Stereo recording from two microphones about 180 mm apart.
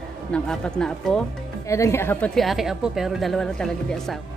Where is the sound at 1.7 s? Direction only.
15° left (ahead or behind).